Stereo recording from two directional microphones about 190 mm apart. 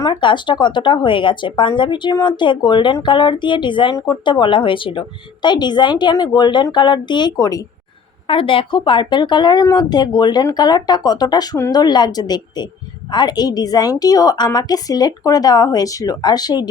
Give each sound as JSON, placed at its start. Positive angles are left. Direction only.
{"t": 0.0, "sound": "speech", "side_deg": 25}